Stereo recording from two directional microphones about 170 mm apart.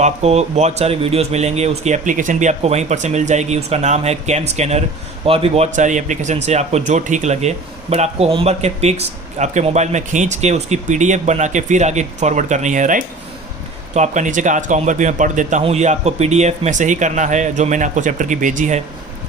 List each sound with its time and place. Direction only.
0.0 s speech: 40° right (ahead or behind)